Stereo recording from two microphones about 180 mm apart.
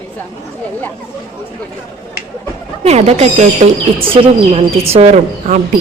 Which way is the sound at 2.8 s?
35° right (ahead or behind).